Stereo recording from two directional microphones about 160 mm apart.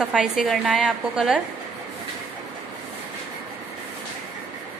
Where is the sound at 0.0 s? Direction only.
5° right (ahead or behind).